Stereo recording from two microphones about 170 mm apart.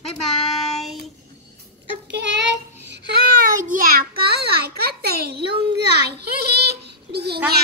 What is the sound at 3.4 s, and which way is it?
A child's voice, 55° right (ahead or behind).